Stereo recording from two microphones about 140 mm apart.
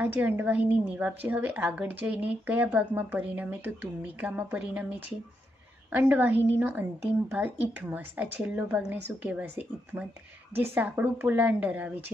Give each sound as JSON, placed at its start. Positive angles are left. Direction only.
{"t": 0.0, "sound": "a woman's voice", "side_deg": -15}
{"t": 5.9, "sound": "a woman's voice", "side_deg": -10}